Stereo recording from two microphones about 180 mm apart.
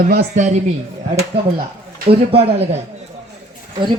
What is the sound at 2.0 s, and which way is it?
Speech, 35° right (ahead or behind).